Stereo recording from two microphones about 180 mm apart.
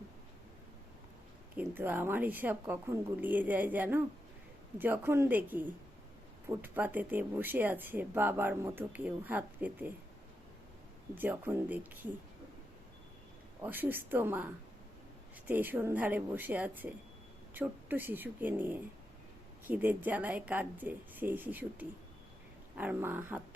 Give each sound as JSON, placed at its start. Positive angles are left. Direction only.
{"t": 1.5, "sound": "speech", "side_deg": -10}
{"t": 11.1, "sound": "speech", "side_deg": -10}
{"t": 13.6, "sound": "speech", "side_deg": -10}